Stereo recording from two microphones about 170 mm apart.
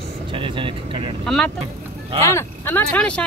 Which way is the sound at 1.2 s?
5° left (ahead or behind).